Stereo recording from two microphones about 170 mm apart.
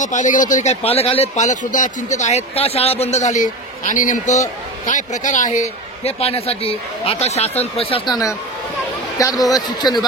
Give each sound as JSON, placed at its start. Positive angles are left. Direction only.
{"t": 0.0, "sound": "speech", "side_deg": 45}
{"t": 8.1, "sound": "speech", "side_deg": 20}